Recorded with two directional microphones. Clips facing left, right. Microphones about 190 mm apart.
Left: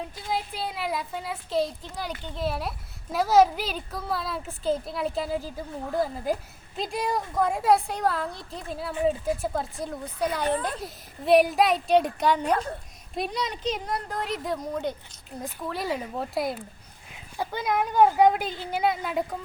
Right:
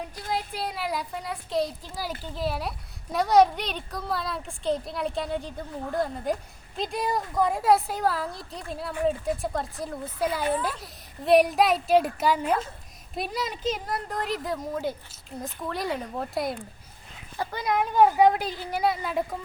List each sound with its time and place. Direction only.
0.0 s a woman's voice: centre (ahead or behind)